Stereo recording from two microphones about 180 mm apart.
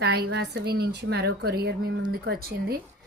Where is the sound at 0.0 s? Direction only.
65° right (ahead or behind).